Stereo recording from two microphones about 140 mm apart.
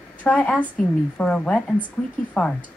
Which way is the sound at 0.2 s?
10° left (ahead or behind).